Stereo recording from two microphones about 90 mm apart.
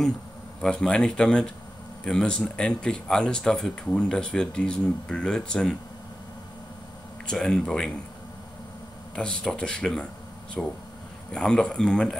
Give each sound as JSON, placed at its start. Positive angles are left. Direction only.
{"t": 0.6, "sound": "speech", "side_deg": 10}
{"t": 7.2, "sound": "speech", "side_deg": 5}
{"t": 9.1, "sound": "speech", "side_deg": 10}